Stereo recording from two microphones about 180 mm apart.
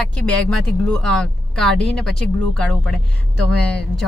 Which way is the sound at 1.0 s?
5° left (ahead or behind).